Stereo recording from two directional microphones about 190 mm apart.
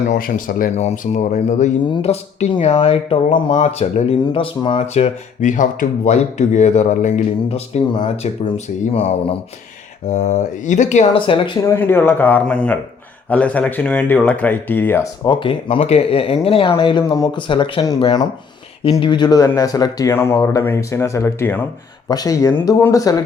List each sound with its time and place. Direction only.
0.1 s speech: 45° left (ahead or behind)
1.8 s speech: 30° left (ahead or behind)
11.6 s speech: 15° left (ahead or behind)
15.3 s speech: 25° left (ahead or behind)